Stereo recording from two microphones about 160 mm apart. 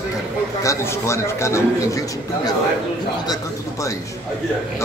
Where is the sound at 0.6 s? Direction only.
15° left (ahead or behind).